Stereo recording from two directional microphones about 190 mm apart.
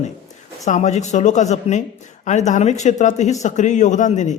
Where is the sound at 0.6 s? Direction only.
40° left (ahead or behind).